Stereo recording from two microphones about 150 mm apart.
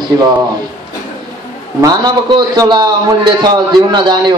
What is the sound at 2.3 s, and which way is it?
A man's voice, 30° right (ahead or behind).